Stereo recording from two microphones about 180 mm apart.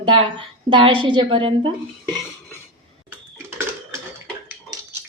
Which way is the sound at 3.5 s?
15° right (ahead or behind).